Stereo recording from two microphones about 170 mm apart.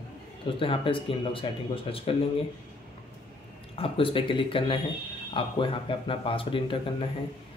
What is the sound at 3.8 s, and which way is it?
Speech, 30° left (ahead or behind).